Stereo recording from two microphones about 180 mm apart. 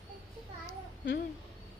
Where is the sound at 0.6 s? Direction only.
70° left (ahead or behind).